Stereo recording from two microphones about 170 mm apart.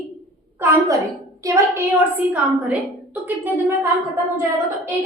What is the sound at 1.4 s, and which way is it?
A woman's voice, 15° right (ahead or behind).